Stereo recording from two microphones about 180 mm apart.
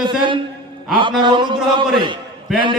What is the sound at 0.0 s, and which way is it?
A man's voice, 25° right (ahead or behind).